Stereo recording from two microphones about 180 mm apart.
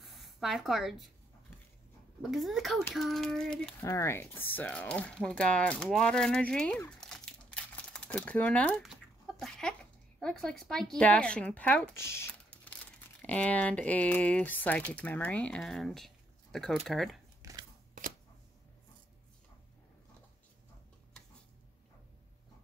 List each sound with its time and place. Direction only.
0.0 s speech: centre (ahead or behind)
2.3 s speech: centre (ahead or behind)
3.8 s speech: 15° left (ahead or behind)
7.0 s crumpling: 5° left (ahead or behind)
9.4 s speech: 5° left (ahead or behind)
17.4 s a sound: 20° right (ahead or behind)